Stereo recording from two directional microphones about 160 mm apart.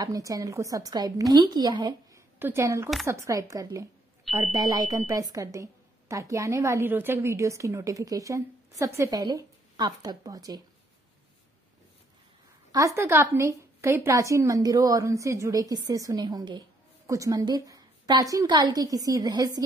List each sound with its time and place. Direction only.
0.0 s a woman's voice: 20° right (ahead or behind)
2.3 s a woman's voice: 15° right (ahead or behind)
12.7 s a woman's voice: 20° right (ahead or behind)